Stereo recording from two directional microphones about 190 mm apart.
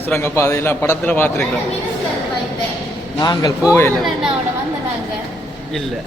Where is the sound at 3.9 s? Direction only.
Centre (ahead or behind).